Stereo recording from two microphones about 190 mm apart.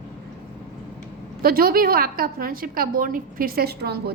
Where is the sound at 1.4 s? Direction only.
50° right (ahead or behind).